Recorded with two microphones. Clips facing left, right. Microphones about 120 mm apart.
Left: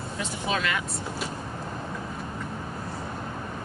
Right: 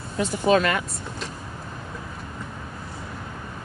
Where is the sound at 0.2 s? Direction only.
45° right (ahead or behind).